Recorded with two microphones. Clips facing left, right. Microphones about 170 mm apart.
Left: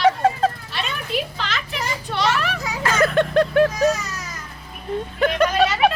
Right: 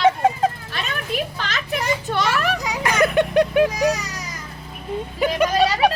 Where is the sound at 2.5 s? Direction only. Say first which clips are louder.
Right 1 dB; 15° right (ahead or behind).